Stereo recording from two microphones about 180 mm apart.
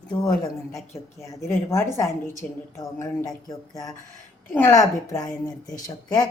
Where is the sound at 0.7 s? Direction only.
15° left (ahead or behind).